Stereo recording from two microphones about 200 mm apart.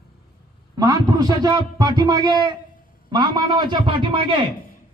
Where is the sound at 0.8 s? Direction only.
15° right (ahead or behind).